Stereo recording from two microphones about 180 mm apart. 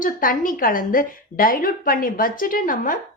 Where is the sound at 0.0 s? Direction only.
50° left (ahead or behind).